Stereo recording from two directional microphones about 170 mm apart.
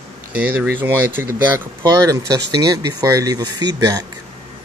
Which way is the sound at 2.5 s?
20° right (ahead or behind).